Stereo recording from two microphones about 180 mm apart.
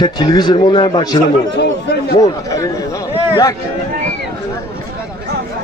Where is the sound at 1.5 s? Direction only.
65° left (ahead or behind).